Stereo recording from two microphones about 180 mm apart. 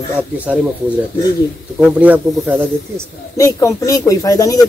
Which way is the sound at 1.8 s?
10° right (ahead or behind).